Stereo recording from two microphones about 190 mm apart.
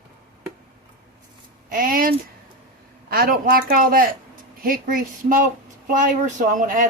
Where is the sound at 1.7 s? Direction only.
45° right (ahead or behind).